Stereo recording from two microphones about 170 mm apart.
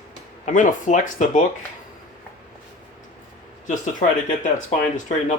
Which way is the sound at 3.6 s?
45° left (ahead or behind).